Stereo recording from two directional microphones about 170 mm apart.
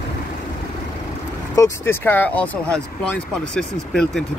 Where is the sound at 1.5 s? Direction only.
15° left (ahead or behind).